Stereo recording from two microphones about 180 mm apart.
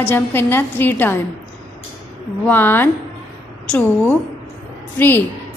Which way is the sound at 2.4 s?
10° left (ahead or behind).